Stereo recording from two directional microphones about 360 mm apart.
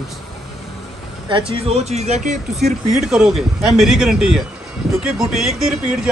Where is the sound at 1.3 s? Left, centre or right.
Centre.